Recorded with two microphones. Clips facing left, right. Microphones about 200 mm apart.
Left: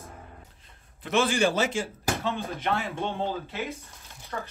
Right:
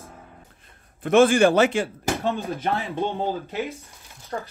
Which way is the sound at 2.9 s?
40° right (ahead or behind).